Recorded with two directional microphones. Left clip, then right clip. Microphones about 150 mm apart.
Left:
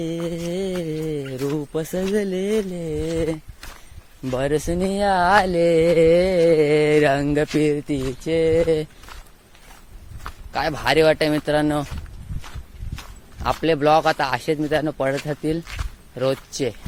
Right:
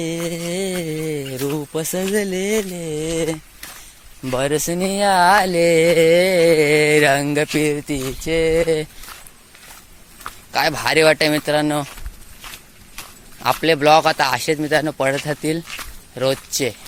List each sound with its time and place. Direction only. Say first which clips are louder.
0.0 s speech: right 2 dB; 5° left (ahead or behind)
3.0 s a man's voice: right 2 dB; 5° left (ahead or behind)
4.4 s speech: right 2 dB; 10° left (ahead or behind)
10.5 s a man's voice: right 3 dB; 5° left (ahead or behind)
13.4 s a man's voice: right 3 dB; 10° left (ahead or behind)